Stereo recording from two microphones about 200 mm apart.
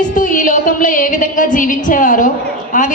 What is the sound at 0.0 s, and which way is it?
A woman's voice, 40° left (ahead or behind).